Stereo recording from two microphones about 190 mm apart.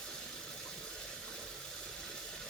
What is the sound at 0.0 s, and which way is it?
Water, 5° left (ahead or behind).